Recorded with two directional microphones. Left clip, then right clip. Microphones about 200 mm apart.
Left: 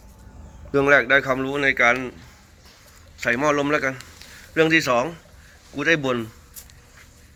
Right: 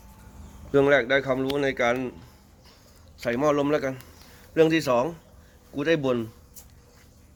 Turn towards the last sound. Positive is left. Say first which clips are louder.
# left 3 dB
turn(degrees=-15)  # may be behind; listen again after turning